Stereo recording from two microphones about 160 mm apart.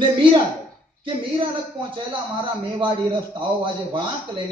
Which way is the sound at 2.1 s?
30° right (ahead or behind).